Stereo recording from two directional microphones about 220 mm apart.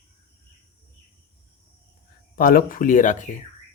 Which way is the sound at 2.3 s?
40° left (ahead or behind).